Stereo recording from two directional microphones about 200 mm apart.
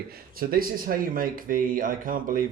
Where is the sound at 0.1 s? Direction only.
45° right (ahead or behind).